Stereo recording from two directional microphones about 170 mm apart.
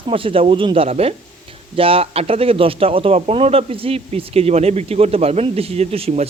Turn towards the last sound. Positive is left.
turn(degrees=-35)  # may be behind; listen again after turning